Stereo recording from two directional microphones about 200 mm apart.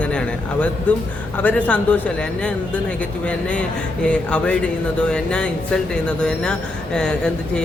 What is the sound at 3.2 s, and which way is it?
Speech, 5° left (ahead or behind).